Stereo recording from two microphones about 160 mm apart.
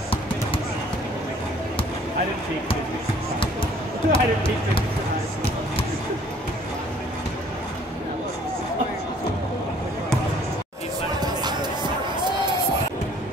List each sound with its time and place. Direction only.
4.1 s speech: 35° left (ahead or behind)
11.1 s music: 30° right (ahead or behind)